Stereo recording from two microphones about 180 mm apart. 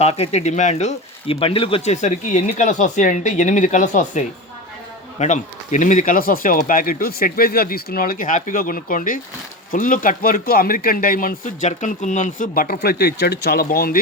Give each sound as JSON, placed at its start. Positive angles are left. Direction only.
{"t": 0.0, "sound": "speech", "side_deg": 35}
{"t": 5.2, "sound": "a man's voice", "side_deg": 40}